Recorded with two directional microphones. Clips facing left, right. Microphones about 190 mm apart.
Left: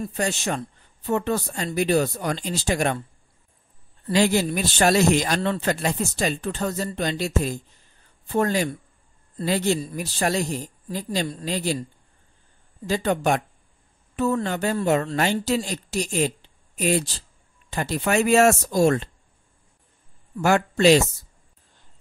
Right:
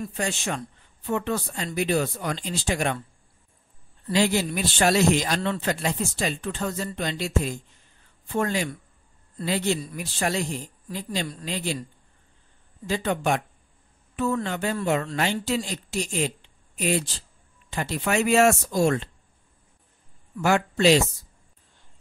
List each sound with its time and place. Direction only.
0.0 s speech: 40° left (ahead or behind)
4.1 s speech: 45° left (ahead or behind)
12.8 s speech: 40° left (ahead or behind)
20.4 s speech: 45° left (ahead or behind)